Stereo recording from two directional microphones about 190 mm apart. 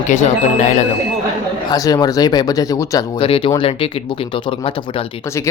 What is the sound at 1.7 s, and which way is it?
Speech, 20° left (ahead or behind).